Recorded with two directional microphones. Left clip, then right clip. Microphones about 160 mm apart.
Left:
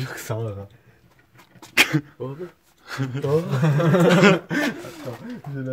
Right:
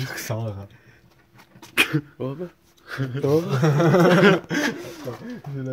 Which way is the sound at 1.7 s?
25° left (ahead or behind).